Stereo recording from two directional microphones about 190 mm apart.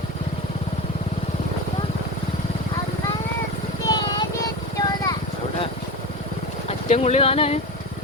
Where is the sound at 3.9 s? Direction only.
25° left (ahead or behind).